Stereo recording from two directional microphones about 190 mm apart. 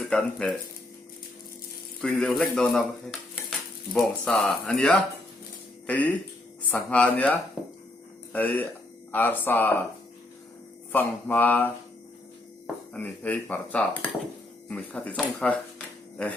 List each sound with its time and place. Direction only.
0.0 s speech: 5° left (ahead or behind)
2.0 s speech: 5° left (ahead or behind)
3.9 s speech: 5° left (ahead or behind)
7.6 s a sound: centre (ahead or behind)
8.3 s speech: 10° left (ahead or behind)
10.9 s speech: 10° left (ahead or behind)
12.9 s speech: 10° left (ahead or behind)